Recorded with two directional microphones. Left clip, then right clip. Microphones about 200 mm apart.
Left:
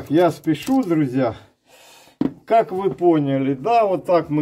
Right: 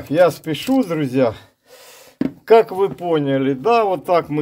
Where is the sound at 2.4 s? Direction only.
50° right (ahead or behind).